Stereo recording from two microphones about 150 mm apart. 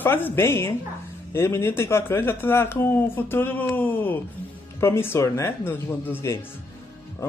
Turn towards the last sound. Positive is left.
turn(degrees=15)  # may be behind; listen again after turning